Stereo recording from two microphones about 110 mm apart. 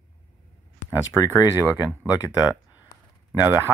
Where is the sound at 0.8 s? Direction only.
25° left (ahead or behind).